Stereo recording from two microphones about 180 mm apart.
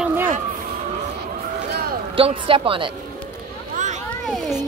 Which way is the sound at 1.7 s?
60° right (ahead or behind).